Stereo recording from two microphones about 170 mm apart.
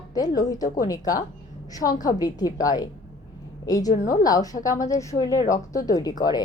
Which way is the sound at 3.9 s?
50° left (ahead or behind).